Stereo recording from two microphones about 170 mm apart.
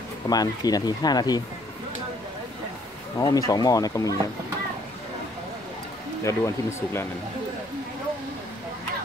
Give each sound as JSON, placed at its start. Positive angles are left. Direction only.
{"t": 0.3, "sound": "speech", "side_deg": 20}
{"t": 3.2, "sound": "speech", "side_deg": 20}
{"t": 6.2, "sound": "speech", "side_deg": 15}